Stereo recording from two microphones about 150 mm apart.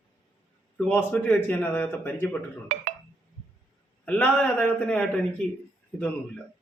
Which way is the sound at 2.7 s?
50° right (ahead or behind).